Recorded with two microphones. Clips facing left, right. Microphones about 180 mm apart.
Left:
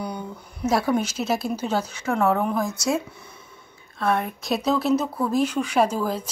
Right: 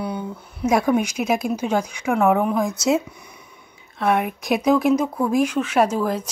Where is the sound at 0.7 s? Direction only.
15° right (ahead or behind).